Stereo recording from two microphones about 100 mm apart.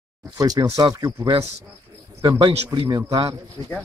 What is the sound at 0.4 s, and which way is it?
Speech, 40° right (ahead or behind).